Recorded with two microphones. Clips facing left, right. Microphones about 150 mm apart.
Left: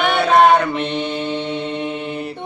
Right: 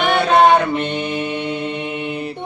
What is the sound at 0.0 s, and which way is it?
Mantra, centre (ahead or behind).